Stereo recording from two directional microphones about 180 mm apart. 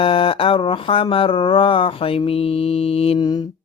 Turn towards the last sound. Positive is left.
turn(degrees=30)  # may be behind; listen again after turning